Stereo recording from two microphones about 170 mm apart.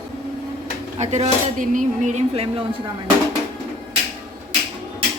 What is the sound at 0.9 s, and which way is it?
Speech, 40° right (ahead or behind).